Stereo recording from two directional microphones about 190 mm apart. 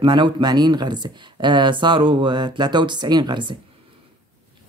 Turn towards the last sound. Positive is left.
turn(degrees=-25)  # may be behind; listen again after turning